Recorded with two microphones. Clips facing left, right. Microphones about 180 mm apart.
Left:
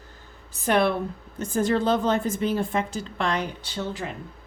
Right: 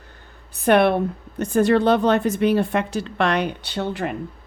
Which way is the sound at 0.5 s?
60° right (ahead or behind).